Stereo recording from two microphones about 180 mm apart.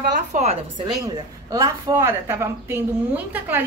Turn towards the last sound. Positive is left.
turn(degrees=-10)  # may be behind; listen again after turning